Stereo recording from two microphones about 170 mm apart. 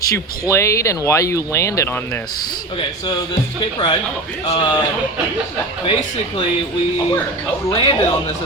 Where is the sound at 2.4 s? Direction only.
30° left (ahead or behind).